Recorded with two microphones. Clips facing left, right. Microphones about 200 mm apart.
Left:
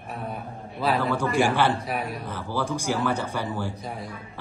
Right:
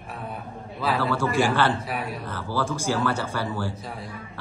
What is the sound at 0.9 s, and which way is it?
Speech, 15° left (ahead or behind).